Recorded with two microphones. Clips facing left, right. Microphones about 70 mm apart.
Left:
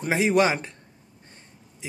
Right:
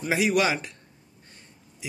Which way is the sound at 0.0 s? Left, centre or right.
Left.